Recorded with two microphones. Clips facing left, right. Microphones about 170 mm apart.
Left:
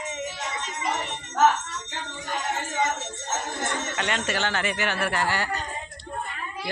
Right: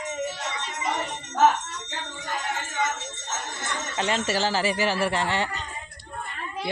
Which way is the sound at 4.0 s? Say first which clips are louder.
Right 4 dB; 35° right (ahead or behind).